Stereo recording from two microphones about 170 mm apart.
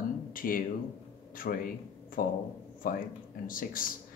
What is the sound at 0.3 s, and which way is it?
Speech, 55° left (ahead or behind).